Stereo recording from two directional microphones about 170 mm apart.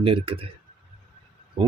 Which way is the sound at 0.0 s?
30° right (ahead or behind).